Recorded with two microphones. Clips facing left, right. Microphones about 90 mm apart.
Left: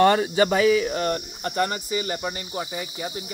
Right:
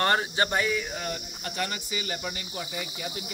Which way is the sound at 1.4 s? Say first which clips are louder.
Left 7 dB; 40° left (ahead or behind).